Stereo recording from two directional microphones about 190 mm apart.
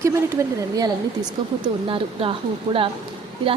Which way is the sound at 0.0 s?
15° right (ahead or behind).